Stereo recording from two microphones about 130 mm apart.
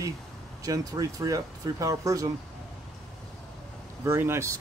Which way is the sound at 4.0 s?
20° right (ahead or behind).